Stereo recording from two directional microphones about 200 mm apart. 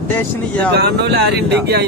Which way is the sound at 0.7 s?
55° right (ahead or behind).